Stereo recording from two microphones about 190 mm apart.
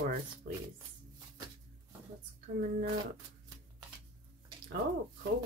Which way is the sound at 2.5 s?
60° right (ahead or behind).